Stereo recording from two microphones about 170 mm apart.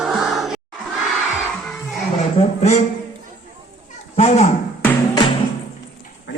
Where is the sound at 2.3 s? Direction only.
40° left (ahead or behind).